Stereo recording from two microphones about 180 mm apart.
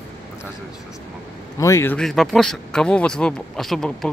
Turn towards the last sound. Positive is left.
turn(degrees=0)  # may be behind; listen again after turning